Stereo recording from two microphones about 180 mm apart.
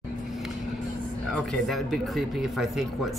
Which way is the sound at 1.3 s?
Centre (ahead or behind).